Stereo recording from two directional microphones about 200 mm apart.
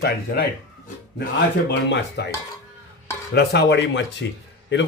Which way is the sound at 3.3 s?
55° left (ahead or behind).